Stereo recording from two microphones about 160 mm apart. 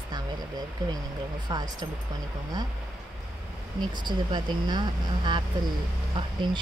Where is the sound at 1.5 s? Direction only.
25° right (ahead or behind).